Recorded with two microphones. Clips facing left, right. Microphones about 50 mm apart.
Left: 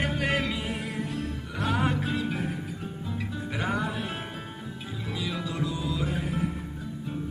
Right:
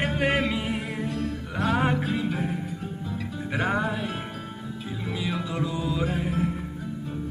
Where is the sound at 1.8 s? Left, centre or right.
Centre.